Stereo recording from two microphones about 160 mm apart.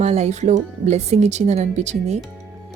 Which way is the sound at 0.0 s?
40° right (ahead or behind).